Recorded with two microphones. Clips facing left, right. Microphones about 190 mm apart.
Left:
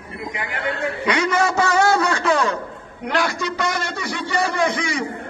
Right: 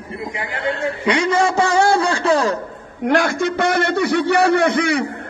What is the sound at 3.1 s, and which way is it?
A man's voice, 50° right (ahead or behind).